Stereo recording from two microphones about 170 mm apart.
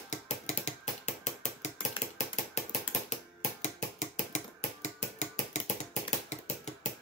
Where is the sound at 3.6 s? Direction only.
45° left (ahead or behind).